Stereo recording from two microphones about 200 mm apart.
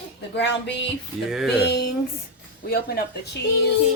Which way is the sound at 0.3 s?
60° left (ahead or behind).